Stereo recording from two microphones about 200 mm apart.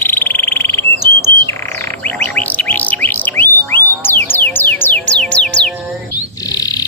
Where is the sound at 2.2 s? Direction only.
10° left (ahead or behind).